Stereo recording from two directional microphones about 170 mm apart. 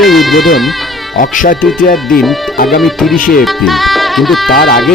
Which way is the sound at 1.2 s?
50° left (ahead or behind).